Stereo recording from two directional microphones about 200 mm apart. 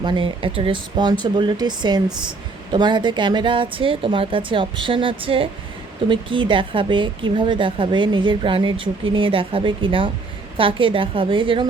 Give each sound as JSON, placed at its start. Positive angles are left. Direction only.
{"t": 0.0, "sound": "speech", "side_deg": -20}